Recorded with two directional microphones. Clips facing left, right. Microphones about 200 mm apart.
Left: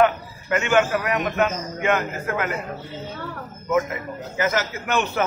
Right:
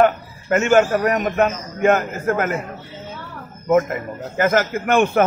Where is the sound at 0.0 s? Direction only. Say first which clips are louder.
Right 3 dB; 45° right (ahead or behind).